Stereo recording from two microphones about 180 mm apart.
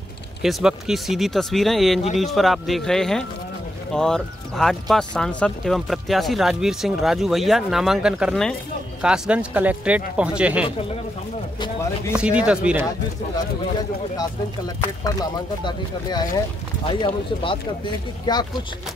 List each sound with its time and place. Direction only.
0.4 s speech: centre (ahead or behind)
12.2 s speech: 5° right (ahead or behind)
14.8 s speech: 25° left (ahead or behind)